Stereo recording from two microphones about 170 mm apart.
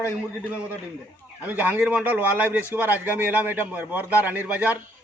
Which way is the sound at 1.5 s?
10° right (ahead or behind).